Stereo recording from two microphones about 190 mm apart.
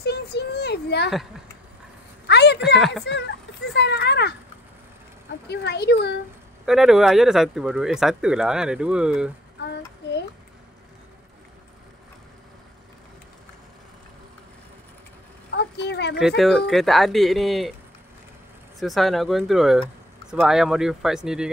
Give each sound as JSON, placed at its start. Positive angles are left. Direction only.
{"t": 0.0, "sound": "a sound", "side_deg": 60}
{"t": 2.2, "sound": "a sound", "side_deg": 65}
{"t": 5.5, "sound": "speech", "side_deg": 60}
{"t": 6.6, "sound": "speech", "side_deg": 0}
{"t": 15.5, "sound": "vehicle", "side_deg": 65}
{"t": 16.2, "sound": "speech", "side_deg": 0}
{"t": 18.8, "sound": "speech", "side_deg": 0}